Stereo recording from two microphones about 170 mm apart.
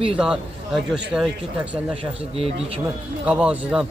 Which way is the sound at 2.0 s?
35° right (ahead or behind).